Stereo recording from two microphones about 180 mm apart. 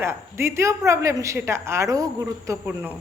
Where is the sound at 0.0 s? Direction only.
15° right (ahead or behind).